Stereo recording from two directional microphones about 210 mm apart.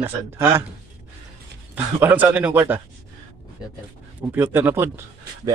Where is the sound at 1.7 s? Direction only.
10° right (ahead or behind).